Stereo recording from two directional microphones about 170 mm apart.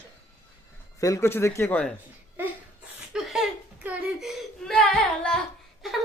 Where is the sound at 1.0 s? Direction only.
20° left (ahead or behind).